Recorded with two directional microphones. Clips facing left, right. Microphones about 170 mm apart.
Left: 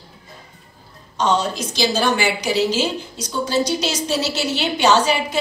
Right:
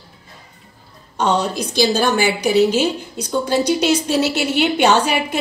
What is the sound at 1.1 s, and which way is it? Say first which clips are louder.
A woman's voice: right 1 dB; 60° right (ahead or behind).